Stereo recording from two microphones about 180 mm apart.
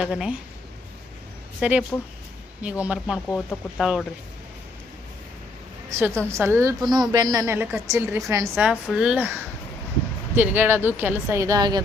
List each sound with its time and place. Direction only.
0.1 s speech: 5° right (ahead or behind)
1.6 s a woman's voice: 5° right (ahead or behind)
3.2 s speech: 10° left (ahead or behind)
3.8 s speech: centre (ahead or behind)
5.9 s a woman's voice: 15° right (ahead or behind)